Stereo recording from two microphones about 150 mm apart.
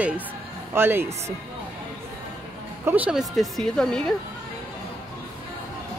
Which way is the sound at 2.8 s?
10° right (ahead or behind).